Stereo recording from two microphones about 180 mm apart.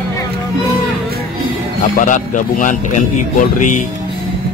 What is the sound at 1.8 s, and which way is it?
A man's voice, 45° left (ahead or behind).